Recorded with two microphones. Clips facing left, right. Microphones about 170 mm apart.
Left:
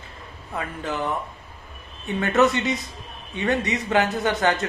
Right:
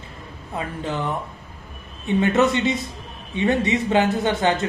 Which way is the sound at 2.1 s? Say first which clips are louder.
Right 2 dB; 20° right (ahead or behind).